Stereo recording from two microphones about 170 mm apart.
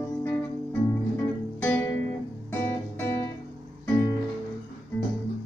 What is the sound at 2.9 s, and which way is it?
Music, 15° left (ahead or behind).